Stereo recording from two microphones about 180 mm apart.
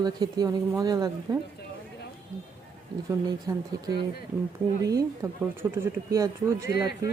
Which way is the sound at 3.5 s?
20° right (ahead or behind).